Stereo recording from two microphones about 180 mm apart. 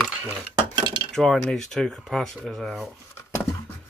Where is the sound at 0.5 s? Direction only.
25° right (ahead or behind).